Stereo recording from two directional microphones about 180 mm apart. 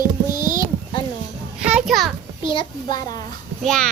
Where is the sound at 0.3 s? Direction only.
45° right (ahead or behind).